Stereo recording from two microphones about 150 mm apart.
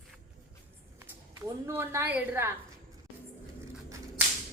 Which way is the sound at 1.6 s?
15° right (ahead or behind).